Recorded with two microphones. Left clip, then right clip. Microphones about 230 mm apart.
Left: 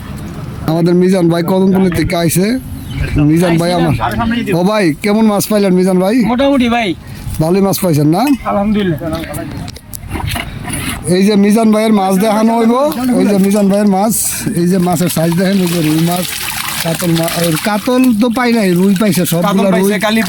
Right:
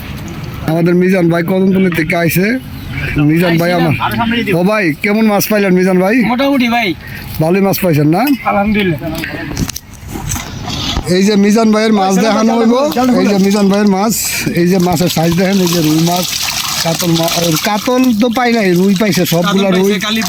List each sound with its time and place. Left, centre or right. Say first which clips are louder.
0.7 s a man's voice: even; centre
11.1 s a man's voice: even; centre
19.9 s speech: left 2 dB; centre